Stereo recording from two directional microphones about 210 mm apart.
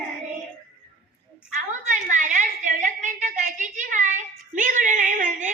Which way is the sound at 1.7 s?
35° right (ahead or behind).